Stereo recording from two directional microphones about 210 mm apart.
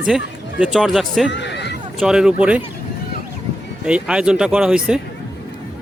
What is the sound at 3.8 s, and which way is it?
Speech, 5° right (ahead or behind).